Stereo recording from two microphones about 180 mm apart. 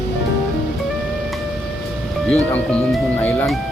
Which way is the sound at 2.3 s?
5° left (ahead or behind).